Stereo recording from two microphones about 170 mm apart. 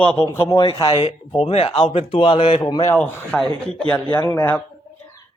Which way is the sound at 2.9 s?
5° left (ahead or behind).